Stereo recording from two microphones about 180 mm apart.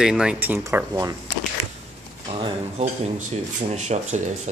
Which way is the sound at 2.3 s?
30° right (ahead or behind).